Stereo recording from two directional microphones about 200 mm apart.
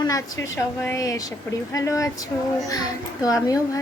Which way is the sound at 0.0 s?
15° left (ahead or behind).